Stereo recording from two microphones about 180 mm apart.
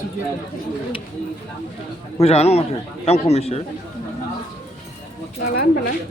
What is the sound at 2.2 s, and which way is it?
Speech, 35° left (ahead or behind).